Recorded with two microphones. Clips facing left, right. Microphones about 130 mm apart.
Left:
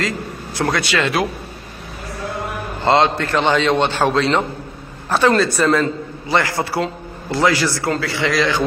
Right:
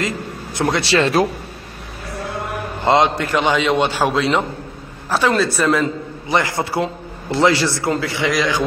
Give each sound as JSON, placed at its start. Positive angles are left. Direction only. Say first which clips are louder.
{"t": 0.6, "sound": "speech", "louder": "right 2 dB", "side_deg": -25}
{"t": 2.8, "sound": "a man's voice", "louder": "even", "side_deg": -15}
{"t": 6.2, "sound": "a man's voice", "louder": "even", "side_deg": -20}